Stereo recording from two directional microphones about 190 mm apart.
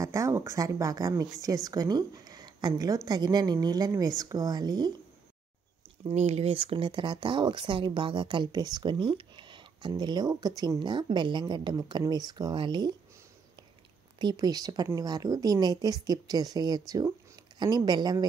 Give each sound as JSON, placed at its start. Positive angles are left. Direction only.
{"t": 0.0, "sound": "speech", "side_deg": -15}
{"t": 6.0, "sound": "speech", "side_deg": -35}
{"t": 14.1, "sound": "speech", "side_deg": -20}